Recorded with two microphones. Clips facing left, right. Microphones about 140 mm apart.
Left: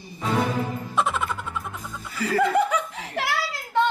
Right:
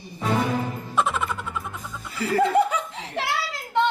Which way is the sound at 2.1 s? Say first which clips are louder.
Right 1 dB; 25° right (ahead or behind).